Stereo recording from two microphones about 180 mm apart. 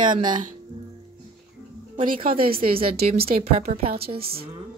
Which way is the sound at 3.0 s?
35° right (ahead or behind).